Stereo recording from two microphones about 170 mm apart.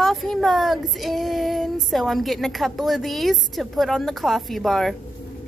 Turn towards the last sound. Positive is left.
turn(degrees=0)  # may be behind; listen again after turning